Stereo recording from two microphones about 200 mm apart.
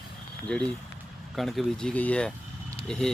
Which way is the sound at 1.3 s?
Centre (ahead or behind).